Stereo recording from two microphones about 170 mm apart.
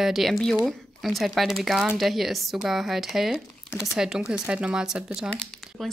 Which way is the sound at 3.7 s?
15° left (ahead or behind).